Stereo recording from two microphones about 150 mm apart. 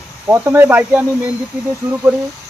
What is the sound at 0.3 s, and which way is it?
Speech, 15° right (ahead or behind).